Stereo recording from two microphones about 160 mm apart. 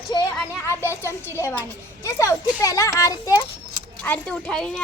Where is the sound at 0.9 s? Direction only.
15° left (ahead or behind).